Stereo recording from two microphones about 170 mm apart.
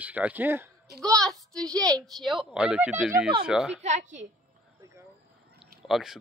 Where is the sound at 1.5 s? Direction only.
20° right (ahead or behind).